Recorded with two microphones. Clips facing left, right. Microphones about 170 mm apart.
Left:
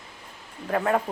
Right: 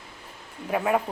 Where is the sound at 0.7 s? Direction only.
10° right (ahead or behind).